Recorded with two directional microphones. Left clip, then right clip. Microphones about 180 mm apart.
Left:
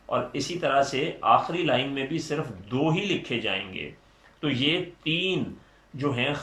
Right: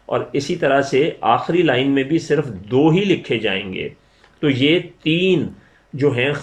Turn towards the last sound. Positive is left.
turn(degrees=-45)  # may be behind; listen again after turning